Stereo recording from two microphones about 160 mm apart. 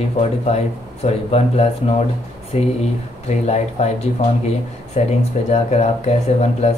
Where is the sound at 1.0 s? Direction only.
45° left (ahead or behind).